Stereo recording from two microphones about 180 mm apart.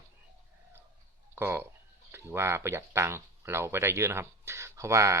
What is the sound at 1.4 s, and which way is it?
Speech, 15° right (ahead or behind).